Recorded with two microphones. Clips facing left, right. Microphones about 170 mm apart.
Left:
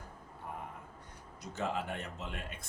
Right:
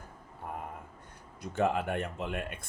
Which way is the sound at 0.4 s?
50° right (ahead or behind).